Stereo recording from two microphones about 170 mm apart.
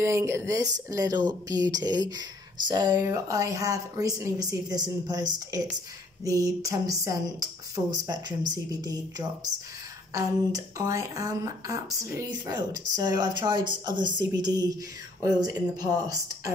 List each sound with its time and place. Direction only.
0.0 s speech: 15° right (ahead or behind)